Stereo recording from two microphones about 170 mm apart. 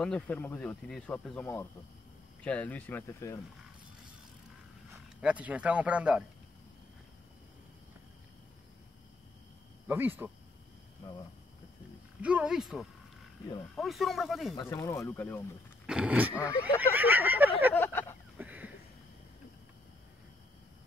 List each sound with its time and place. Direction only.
0.0 s speech: 5° left (ahead or behind)
5.2 s speech: 10° right (ahead or behind)
9.8 s speech: 10° right (ahead or behind)
12.2 s speech: 5° right (ahead or behind)
14.5 s speech: 25° left (ahead or behind)
15.9 s speech: 5° right (ahead or behind)
16.4 s a sound: 10° right (ahead or behind)
17.7 s a sound: 15° left (ahead or behind)
18.4 s a sound: 10° right (ahead or behind)